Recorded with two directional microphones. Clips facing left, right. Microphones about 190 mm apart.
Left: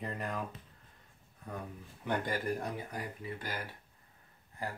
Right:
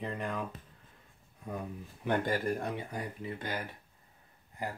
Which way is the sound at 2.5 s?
25° right (ahead or behind).